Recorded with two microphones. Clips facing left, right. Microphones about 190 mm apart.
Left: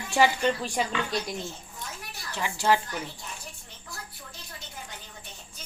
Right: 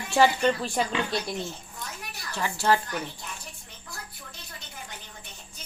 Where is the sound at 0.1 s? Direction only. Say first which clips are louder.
Right 2 dB; 10° left (ahead or behind).